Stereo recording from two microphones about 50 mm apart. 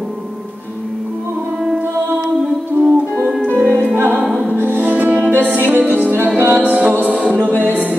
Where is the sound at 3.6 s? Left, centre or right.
Right.